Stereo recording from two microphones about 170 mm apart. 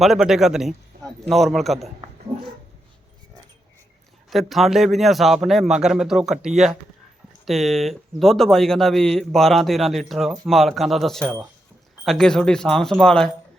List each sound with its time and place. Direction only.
0.0 s speech: centre (ahead or behind)
4.3 s speech: centre (ahead or behind)